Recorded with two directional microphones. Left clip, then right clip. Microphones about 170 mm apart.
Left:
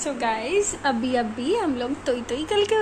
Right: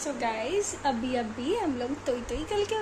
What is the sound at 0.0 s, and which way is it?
A woman's voice, 5° left (ahead or behind).